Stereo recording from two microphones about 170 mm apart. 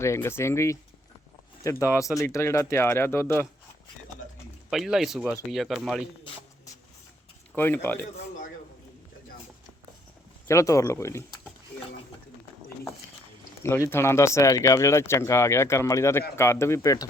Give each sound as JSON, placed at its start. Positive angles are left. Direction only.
{"t": 0.0, "sound": "speech", "side_deg": 15}
{"t": 4.7, "sound": "speech", "side_deg": 0}
{"t": 7.5, "sound": "speech", "side_deg": 10}
{"t": 10.5, "sound": "speech", "side_deg": 20}
{"t": 13.6, "sound": "speech", "side_deg": 15}